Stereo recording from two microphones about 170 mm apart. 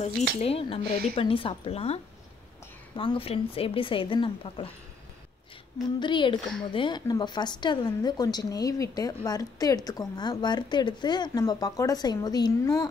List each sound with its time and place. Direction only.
0.4 s a woman's voice: 35° left (ahead or behind)
3.0 s a woman's voice: 30° left (ahead or behind)
5.9 s a woman's voice: 25° left (ahead or behind)